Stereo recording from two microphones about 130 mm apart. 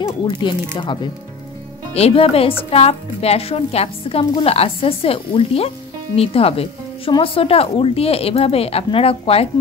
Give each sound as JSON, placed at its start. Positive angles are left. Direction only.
{"t": 0.0, "sound": "speech", "side_deg": 35}
{"t": 2.0, "sound": "a woman's voice", "side_deg": 50}